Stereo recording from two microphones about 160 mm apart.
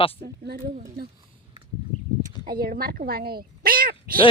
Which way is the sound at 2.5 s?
70° right (ahead or behind).